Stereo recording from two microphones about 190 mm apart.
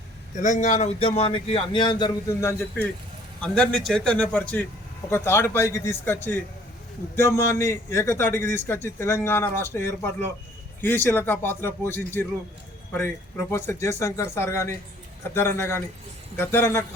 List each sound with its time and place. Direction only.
0.3 s speech: 40° left (ahead or behind); by 2.6 s 20° left (ahead or behind)
3.4 s a man's voice: 5° left (ahead or behind)
7.2 s a man's voice: 15° left (ahead or behind)